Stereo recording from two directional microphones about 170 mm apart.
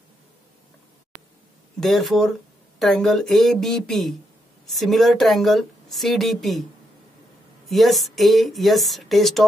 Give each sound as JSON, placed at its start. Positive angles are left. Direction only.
{"t": 1.8, "sound": "speech", "side_deg": 0}
{"t": 7.6, "sound": "speech", "side_deg": 0}